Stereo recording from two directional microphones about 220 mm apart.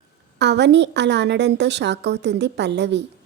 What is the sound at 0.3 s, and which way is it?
Speech, 50° right (ahead or behind).